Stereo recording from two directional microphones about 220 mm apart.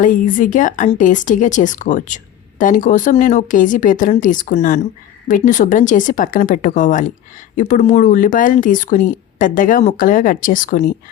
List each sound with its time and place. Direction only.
0.0 s speech: 35° left (ahead or behind)